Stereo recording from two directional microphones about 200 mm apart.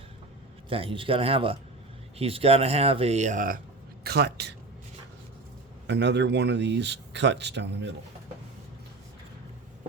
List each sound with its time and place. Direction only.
0.7 s speech: 25° right (ahead or behind)
4.0 s a man's voice: 55° right (ahead or behind)
5.9 s speech: 60° right (ahead or behind)